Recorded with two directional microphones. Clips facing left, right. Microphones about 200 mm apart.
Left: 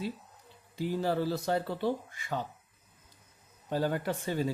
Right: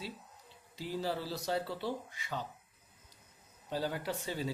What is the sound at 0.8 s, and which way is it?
Speech, 55° left (ahead or behind).